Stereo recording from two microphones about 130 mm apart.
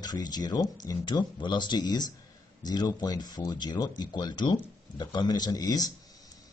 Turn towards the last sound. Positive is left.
turn(degrees=30)  # may be behind; listen again after turning